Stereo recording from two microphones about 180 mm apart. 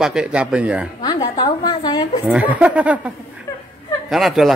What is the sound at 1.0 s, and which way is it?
A woman's voice, 25° left (ahead or behind).